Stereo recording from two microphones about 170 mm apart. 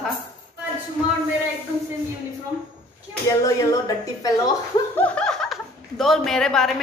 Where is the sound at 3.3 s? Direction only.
20° left (ahead or behind).